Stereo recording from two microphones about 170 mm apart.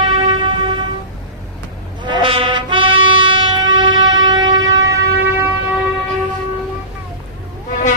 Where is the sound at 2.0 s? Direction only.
30° right (ahead or behind).